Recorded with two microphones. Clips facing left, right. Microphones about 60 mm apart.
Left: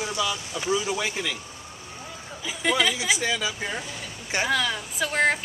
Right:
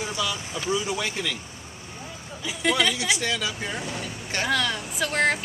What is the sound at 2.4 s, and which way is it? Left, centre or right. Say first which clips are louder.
A woman's voice: even; centre.